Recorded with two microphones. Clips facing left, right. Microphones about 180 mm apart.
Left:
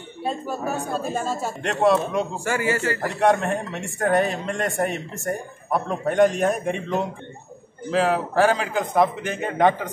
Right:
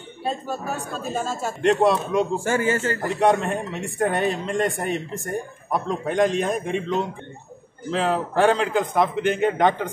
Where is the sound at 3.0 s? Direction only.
Centre (ahead or behind).